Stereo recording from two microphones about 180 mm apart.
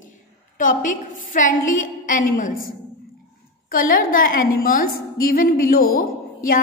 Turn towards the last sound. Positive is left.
turn(degrees=55)  # may be behind; listen again after turning